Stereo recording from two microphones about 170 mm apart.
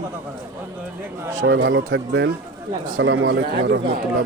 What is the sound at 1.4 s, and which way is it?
Speech, 90° right.